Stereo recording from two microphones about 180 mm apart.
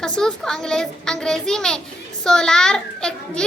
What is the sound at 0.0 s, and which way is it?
A child's voice, 5° left (ahead or behind).